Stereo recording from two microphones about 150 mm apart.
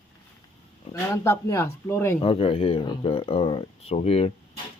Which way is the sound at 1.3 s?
20° left (ahead or behind).